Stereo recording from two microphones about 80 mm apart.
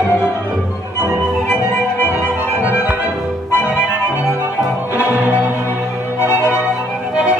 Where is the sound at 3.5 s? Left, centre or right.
Left.